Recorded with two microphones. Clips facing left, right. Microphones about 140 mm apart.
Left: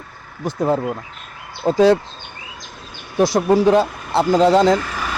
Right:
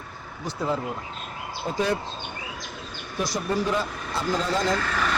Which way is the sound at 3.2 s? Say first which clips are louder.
Left 12 dB; 80° left.